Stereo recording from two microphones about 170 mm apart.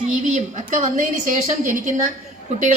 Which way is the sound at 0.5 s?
45° right (ahead or behind).